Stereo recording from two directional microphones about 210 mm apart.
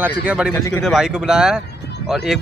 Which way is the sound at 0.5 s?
15° left (ahead or behind).